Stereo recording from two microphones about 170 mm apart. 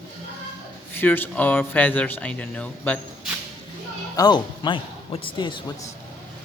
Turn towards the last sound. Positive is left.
turn(degrees=30)  # may be behind; listen again after turning